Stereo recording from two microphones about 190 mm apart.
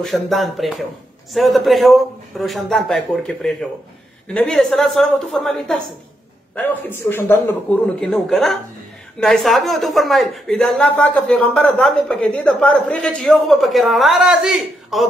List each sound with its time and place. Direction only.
0.0 s a man's voice: centre (ahead or behind)